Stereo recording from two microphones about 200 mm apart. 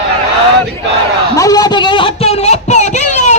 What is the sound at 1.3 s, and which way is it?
Speech, 15° left (ahead or behind).